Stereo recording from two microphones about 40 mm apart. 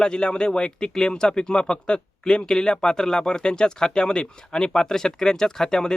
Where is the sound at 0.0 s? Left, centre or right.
Left.